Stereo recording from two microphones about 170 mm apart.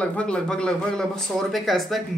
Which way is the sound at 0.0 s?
5° left (ahead or behind).